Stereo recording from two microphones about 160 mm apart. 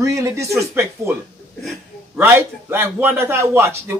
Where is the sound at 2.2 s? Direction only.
15° right (ahead or behind).